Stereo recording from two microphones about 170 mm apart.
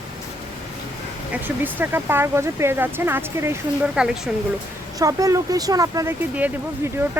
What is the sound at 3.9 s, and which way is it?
Speech, 5° right (ahead or behind).